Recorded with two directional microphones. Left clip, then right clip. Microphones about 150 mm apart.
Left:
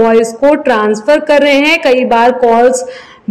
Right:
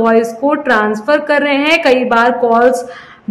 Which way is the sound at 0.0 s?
20° left (ahead or behind).